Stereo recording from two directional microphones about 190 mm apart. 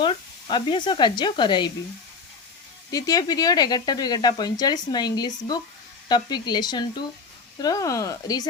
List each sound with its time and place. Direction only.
0.0 s speech: 25° left (ahead or behind)
2.9 s speech: 20° left (ahead or behind)